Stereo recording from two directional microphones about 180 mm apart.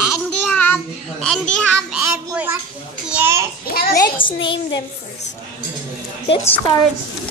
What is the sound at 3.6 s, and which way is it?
Speech, 55° left (ahead or behind).